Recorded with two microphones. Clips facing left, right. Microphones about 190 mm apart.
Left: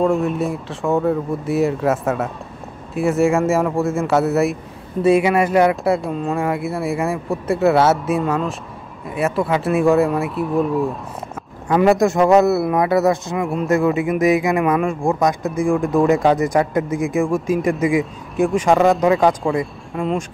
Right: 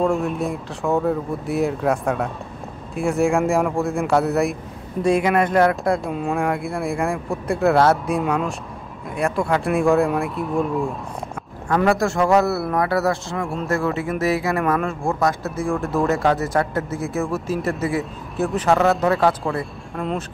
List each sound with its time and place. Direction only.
0.0 s speech: centre (ahead or behind)
11.7 s a man's voice: 20° left (ahead or behind)
19.4 s speech: centre (ahead or behind)